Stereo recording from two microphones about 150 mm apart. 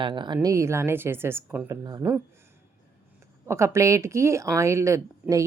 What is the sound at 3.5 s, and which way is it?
A woman's voice, 20° right (ahead or behind).